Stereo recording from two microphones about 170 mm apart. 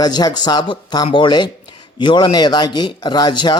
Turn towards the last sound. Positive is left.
turn(degrees=25)  # may be behind; listen again after turning